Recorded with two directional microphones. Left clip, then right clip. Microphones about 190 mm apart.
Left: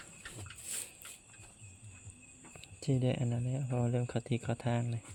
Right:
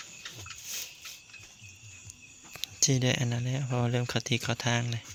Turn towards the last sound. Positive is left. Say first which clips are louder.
# right 7 dB
turn(degrees=-5)  # may be behind; listen again after turning